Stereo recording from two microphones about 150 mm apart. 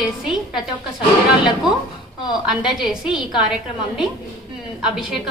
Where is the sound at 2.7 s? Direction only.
5° right (ahead or behind).